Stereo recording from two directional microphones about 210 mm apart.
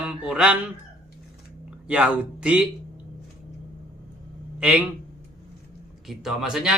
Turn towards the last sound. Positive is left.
turn(degrees=0)  # may be behind; listen again after turning